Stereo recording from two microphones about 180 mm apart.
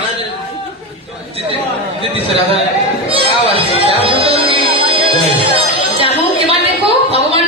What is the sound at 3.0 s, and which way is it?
Music, 30° right (ahead or behind).